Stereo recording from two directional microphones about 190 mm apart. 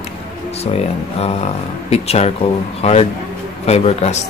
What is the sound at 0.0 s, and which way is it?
Speech, 35° left (ahead or behind).